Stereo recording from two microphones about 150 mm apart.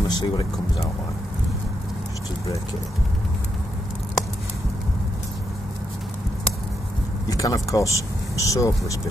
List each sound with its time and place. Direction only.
0.0 s speech: 30° left (ahead or behind)
7.2 s speech: 25° left (ahead or behind)